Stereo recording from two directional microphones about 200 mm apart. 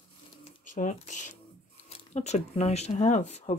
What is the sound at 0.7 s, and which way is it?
Speech, 40° left (ahead or behind).